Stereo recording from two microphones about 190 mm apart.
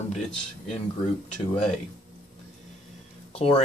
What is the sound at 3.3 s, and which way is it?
Speech, 30° left (ahead or behind).